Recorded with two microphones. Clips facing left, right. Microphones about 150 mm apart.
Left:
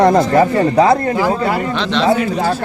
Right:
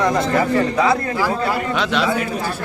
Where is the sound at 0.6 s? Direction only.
40° left (ahead or behind).